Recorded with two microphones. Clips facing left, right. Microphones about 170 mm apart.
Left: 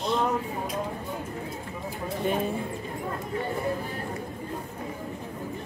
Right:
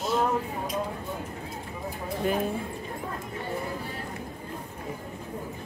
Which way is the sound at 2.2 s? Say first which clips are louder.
Even; centre (ahead or behind).